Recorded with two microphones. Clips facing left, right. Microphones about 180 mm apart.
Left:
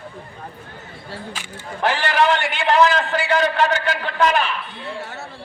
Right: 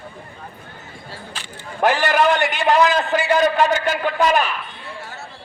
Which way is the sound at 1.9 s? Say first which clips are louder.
Right 1 dB; 45° right (ahead or behind).